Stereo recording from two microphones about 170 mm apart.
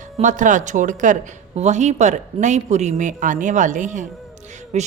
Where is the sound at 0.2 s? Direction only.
45° right (ahead or behind).